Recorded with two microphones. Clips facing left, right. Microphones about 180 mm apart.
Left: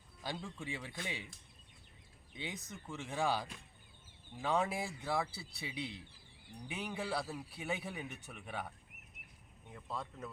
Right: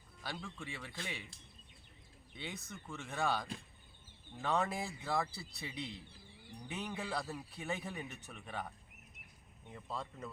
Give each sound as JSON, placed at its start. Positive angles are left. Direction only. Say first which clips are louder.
{"t": 0.2, "sound": "a man's voice", "louder": "left 2 dB", "side_deg": 15}
{"t": 2.3, "sound": "a man's voice", "louder": "left 1 dB", "side_deg": 15}
{"t": 9.7, "sound": "speech", "louder": "even", "side_deg": 0}